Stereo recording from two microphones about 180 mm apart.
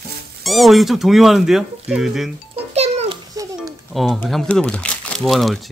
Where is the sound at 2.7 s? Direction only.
35° right (ahead or behind).